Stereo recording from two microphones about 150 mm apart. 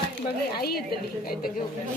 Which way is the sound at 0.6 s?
90° left.